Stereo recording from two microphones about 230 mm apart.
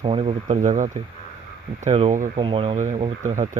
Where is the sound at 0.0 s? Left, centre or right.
Right.